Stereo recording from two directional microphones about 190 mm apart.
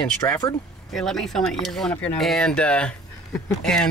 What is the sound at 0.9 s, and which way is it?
Speech, centre (ahead or behind).